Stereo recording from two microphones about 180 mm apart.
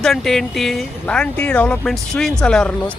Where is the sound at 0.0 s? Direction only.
Centre (ahead or behind).